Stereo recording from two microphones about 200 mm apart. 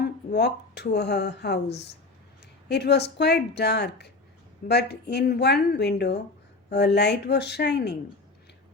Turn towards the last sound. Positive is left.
turn(degrees=55)  # may be behind; listen again after turning